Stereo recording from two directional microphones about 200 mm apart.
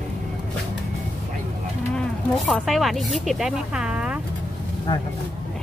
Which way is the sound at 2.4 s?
Centre (ahead or behind).